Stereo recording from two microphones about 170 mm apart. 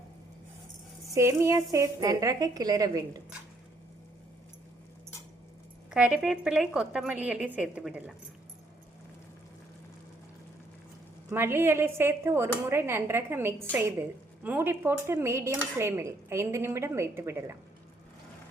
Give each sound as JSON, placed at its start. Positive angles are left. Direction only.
{"t": 1.1, "sound": "a woman's voice", "side_deg": -15}
{"t": 5.9, "sound": "speech", "side_deg": -5}
{"t": 11.3, "sound": "speech", "side_deg": -15}